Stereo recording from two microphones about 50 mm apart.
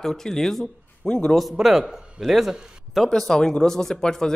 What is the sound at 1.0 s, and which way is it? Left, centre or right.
Speech, centre.